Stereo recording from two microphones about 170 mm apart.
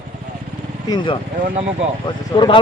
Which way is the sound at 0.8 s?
25° left (ahead or behind).